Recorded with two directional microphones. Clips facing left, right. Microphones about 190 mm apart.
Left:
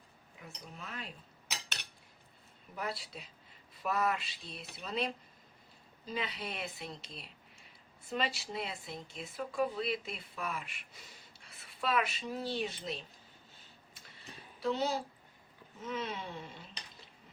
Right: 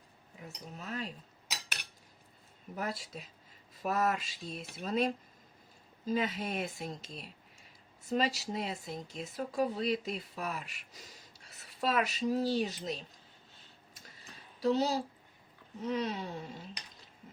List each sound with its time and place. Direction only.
0.4 s speech: 40° right (ahead or behind)
2.7 s speech: 45° right (ahead or behind)
14.6 s speech: 35° right (ahead or behind)